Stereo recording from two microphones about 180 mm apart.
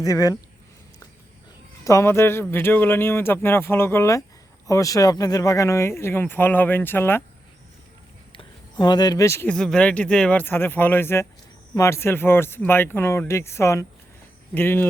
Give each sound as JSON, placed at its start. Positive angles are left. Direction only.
{"t": 0.0, "sound": "speech", "side_deg": 20}
{"t": 1.8, "sound": "speech", "side_deg": 15}
{"t": 8.3, "sound": "speech", "side_deg": 25}